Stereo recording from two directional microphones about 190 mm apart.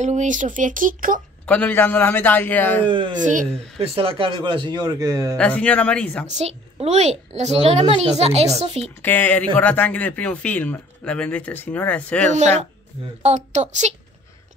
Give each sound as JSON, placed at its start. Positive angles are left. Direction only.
{"t": 0.0, "sound": "speech", "side_deg": -40}
{"t": 1.4, "sound": "speech", "side_deg": 5}
{"t": 2.9, "sound": "speech", "side_deg": -25}
{"t": 3.3, "sound": "a woman's voice", "side_deg": -40}
{"t": 3.9, "sound": "speech", "side_deg": -30}
{"t": 5.4, "sound": "speech", "side_deg": 5}
{"t": 6.2, "sound": "a woman's voice", "side_deg": -35}
{"t": 9.0, "sound": "speech", "side_deg": 10}
{"t": 13.2, "sound": "a woman's voice", "side_deg": -35}